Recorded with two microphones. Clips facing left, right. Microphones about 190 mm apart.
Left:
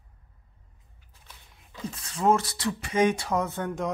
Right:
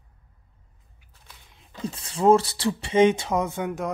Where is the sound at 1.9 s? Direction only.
30° right (ahead or behind).